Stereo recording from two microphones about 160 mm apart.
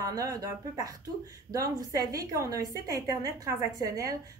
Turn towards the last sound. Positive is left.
turn(degrees=-20)  # may be behind; listen again after turning